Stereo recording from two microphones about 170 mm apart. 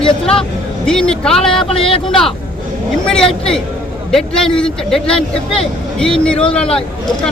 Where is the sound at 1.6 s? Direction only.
35° left (ahead or behind).